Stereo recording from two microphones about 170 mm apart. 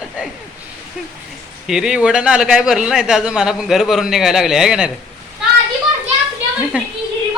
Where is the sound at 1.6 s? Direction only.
5° right (ahead or behind).